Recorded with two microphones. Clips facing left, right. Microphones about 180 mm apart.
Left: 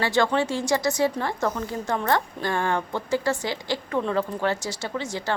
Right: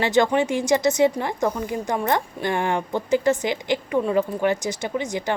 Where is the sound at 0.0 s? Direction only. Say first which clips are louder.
Right 3 dB; 20° right (ahead or behind).